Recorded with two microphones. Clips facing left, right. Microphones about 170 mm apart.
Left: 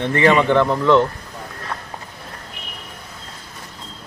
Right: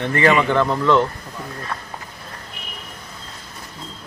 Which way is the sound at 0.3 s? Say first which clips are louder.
Left 3 dB; 10° right (ahead or behind).